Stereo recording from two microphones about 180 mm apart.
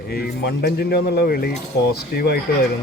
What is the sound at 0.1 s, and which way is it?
Speech, 60° left (ahead or behind).